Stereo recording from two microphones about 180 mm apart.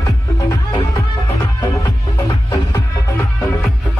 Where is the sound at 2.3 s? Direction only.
20° left (ahead or behind).